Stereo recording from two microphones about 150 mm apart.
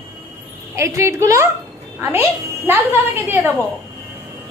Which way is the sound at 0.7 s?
20° right (ahead or behind).